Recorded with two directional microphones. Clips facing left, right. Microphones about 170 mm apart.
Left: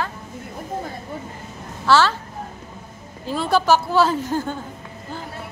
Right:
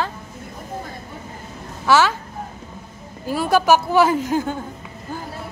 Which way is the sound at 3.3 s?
10° right (ahead or behind).